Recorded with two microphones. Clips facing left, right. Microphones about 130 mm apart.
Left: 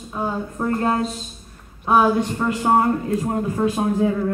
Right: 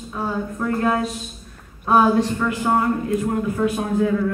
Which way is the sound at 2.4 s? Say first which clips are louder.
Left 2 dB; 30° left (ahead or behind).